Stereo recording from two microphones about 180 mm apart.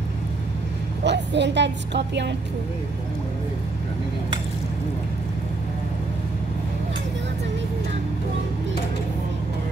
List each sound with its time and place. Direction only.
1.0 s a woman's voice: 75° right (ahead or behind)